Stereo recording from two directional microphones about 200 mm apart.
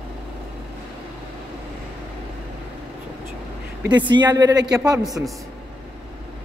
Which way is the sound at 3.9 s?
20° right (ahead or behind).